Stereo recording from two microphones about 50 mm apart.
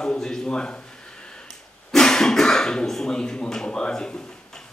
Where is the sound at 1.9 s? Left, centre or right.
Centre.